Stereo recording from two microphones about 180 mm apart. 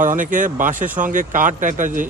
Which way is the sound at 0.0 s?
45° right (ahead or behind).